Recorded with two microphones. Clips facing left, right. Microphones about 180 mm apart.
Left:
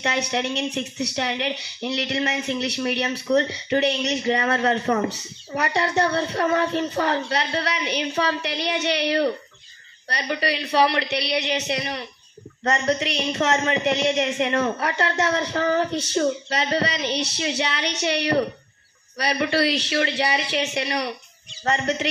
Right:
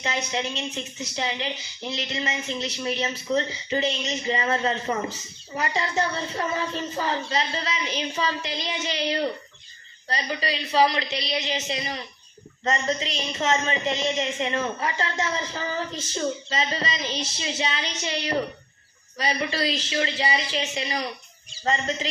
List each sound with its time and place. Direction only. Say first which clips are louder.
0.0 s a man's voice: left 4 dB; 75° left (ahead or behind)